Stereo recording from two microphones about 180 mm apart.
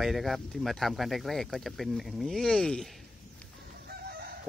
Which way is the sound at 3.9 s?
60° right (ahead or behind).